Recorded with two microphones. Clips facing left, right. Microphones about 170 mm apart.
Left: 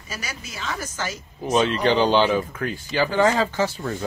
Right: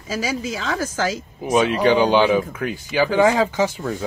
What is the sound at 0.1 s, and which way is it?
Speech, 90° right.